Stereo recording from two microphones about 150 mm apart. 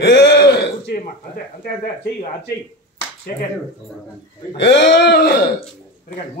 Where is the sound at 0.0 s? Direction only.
90° left.